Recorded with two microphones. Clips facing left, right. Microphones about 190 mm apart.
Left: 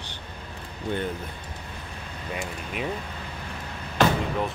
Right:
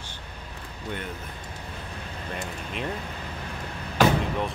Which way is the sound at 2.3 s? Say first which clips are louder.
Left 2 dB; 5° left (ahead or behind).